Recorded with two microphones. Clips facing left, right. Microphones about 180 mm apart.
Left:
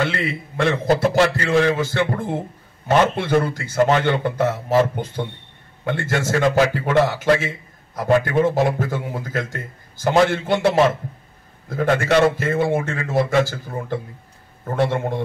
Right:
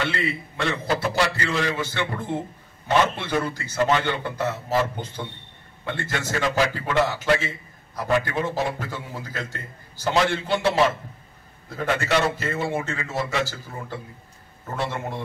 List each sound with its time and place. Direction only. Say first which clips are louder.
0.0 s a man's voice: left 4 dB; 55° left (ahead or behind)
11.7 s a man's voice: left 6 dB; 50° left (ahead or behind)